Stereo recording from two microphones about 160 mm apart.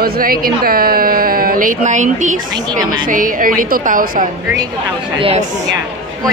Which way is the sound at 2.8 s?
25° right (ahead or behind).